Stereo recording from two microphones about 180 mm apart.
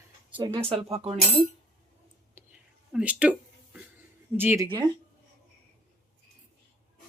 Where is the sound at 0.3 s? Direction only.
30° right (ahead or behind).